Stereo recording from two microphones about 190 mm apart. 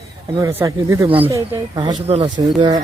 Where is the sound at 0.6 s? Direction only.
15° right (ahead or behind).